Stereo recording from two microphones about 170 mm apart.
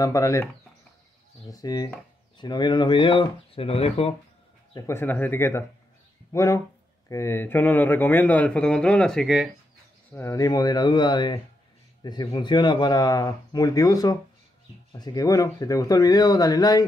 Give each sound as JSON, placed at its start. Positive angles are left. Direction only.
{"t": 0.0, "sound": "a man's voice", "side_deg": 20}
{"t": 1.5, "sound": "speech", "side_deg": 20}
{"t": 4.7, "sound": "a man's voice", "side_deg": 15}
{"t": 10.1, "sound": "speech", "side_deg": 20}